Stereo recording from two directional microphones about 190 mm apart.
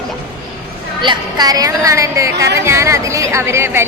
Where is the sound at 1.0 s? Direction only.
20° right (ahead or behind).